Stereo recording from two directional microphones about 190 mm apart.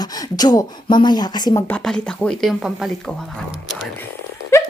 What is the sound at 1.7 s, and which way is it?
Speech, 5° left (ahead or behind).